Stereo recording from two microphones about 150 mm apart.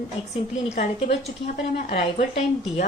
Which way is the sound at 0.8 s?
50° left (ahead or behind).